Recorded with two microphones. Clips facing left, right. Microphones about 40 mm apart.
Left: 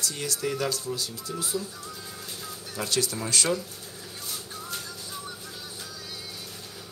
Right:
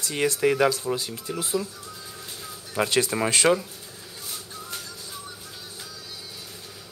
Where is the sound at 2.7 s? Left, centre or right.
Right.